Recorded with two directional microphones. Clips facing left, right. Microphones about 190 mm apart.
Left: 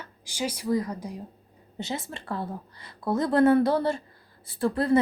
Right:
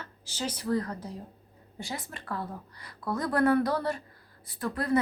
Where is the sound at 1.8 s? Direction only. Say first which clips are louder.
Left 5 dB; 25° left (ahead or behind).